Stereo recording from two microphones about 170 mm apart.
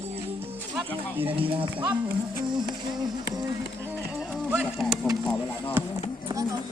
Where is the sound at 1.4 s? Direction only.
30° right (ahead or behind).